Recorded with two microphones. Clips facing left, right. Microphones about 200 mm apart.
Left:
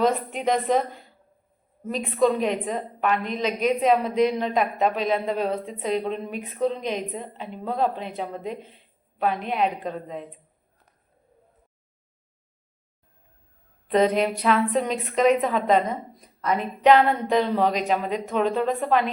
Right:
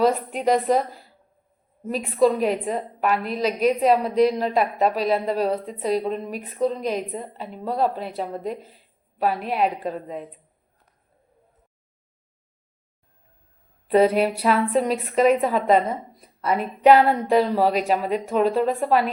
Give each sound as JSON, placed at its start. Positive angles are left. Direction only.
{"t": 0.0, "sound": "a woman's voice", "side_deg": -5}
{"t": 13.8, "sound": "a woman's voice", "side_deg": -10}